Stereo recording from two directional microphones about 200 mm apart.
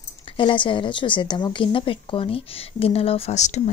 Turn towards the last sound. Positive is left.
turn(degrees=35)  # may be behind; listen again after turning